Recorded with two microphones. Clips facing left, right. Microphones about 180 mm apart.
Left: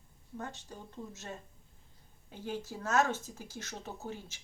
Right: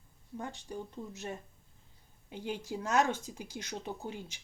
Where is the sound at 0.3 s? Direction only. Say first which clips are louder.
Right 3 dB; 15° right (ahead or behind).